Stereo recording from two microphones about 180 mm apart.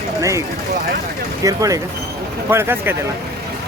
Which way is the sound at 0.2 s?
15° right (ahead or behind).